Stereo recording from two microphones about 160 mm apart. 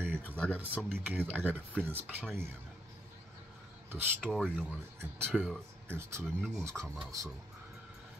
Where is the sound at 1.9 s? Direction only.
10° right (ahead or behind).